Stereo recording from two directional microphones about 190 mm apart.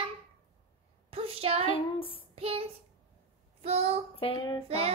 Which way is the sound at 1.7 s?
30° left (ahead or behind).